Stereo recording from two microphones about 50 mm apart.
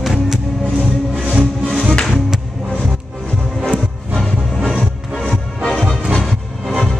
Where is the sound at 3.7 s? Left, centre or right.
Centre.